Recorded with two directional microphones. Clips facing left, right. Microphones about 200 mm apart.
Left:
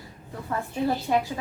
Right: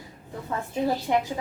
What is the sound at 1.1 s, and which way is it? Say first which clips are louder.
Speech: even; 20° right (ahead or behind).